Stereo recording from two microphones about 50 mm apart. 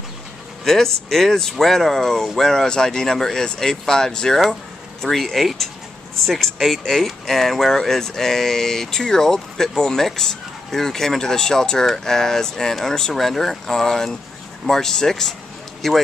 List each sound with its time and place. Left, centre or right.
0.7 s speech: centre